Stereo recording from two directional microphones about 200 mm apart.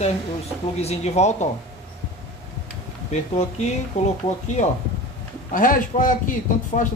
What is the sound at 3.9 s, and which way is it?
Speech, 35° left (ahead or behind).